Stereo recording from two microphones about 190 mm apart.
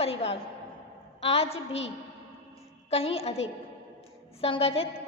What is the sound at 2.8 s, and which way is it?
Speech, 30° left (ahead or behind).